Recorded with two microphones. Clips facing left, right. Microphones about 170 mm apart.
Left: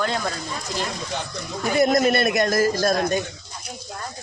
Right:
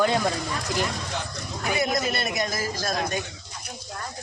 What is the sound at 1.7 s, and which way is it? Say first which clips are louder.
Speech: left 7 dB; 40° left (ahead or behind).